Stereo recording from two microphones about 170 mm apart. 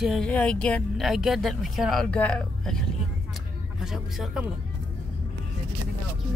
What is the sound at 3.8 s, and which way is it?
Speech, centre (ahead or behind).